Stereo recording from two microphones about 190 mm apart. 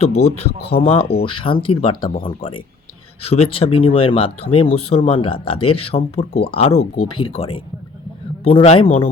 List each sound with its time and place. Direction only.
0.3 s a man's voice: 30° left (ahead or behind)
0.6 s speech: 55° left (ahead or behind)
0.9 s a man's voice: 30° left (ahead or behind)